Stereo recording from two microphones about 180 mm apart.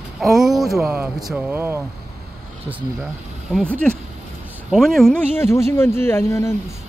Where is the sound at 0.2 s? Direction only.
Centre (ahead or behind).